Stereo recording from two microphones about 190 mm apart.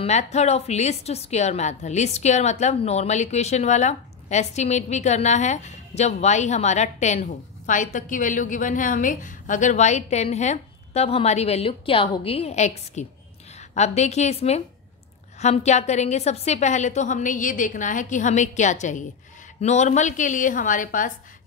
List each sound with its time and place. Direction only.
0.0 s a woman's voice: 35° left (ahead or behind)